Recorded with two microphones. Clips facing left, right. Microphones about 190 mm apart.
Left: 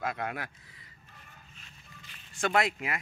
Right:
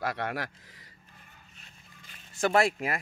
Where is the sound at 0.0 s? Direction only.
75° right (ahead or behind).